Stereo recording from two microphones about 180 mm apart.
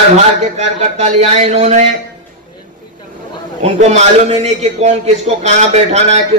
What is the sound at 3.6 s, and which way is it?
A man's voice, 40° right (ahead or behind).